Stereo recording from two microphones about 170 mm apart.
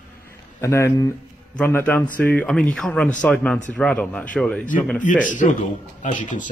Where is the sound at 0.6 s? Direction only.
15° left (ahead or behind).